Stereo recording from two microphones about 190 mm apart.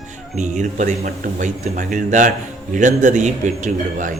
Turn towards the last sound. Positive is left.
turn(degrees=-40)  # may be behind; listen again after turning